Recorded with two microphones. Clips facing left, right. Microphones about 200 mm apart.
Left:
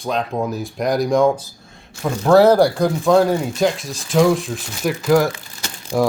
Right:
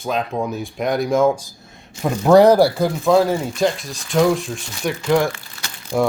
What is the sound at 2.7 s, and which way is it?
Speech, centre (ahead or behind).